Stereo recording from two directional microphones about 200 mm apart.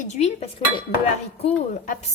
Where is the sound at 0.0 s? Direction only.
35° left (ahead or behind).